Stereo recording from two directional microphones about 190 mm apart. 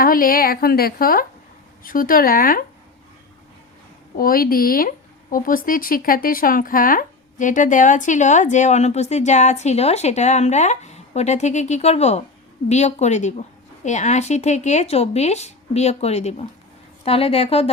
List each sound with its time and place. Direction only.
0.0 s a woman's voice: 50° left (ahead or behind)
4.2 s speech: 50° left (ahead or behind); by 17.7 s 35° left (ahead or behind)